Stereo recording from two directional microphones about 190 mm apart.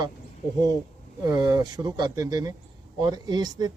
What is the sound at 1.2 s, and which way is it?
Speech, 20° right (ahead or behind).